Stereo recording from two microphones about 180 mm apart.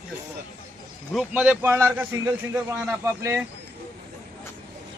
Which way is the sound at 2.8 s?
5° right (ahead or behind).